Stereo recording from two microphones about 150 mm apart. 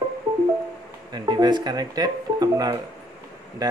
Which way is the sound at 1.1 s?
25° right (ahead or behind).